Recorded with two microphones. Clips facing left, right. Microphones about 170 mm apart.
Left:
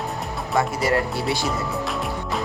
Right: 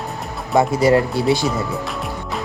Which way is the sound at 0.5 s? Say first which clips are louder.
Right 7 dB; 20° right (ahead or behind).